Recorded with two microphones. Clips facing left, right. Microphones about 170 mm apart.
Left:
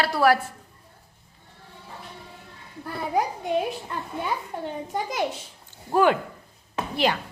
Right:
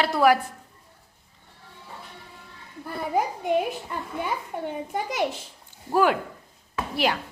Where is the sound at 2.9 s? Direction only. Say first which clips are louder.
Even; 5° right (ahead or behind).